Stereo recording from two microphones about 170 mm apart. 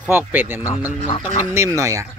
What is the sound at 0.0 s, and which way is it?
Speech, 10° right (ahead or behind).